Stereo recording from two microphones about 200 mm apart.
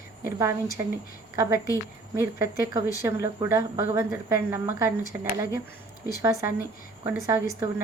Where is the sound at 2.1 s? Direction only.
15° right (ahead or behind).